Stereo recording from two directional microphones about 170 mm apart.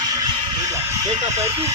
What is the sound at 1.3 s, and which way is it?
Speech, 35° right (ahead or behind).